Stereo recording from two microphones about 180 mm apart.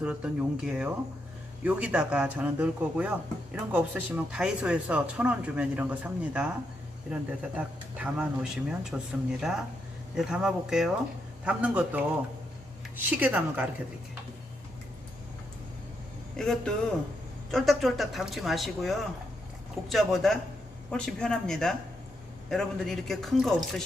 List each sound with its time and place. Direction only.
0.0 s speech: 5° right (ahead or behind)
16.4 s speech: 5° left (ahead or behind)